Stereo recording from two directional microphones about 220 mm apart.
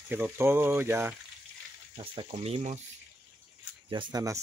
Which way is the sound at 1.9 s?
25° right (ahead or behind).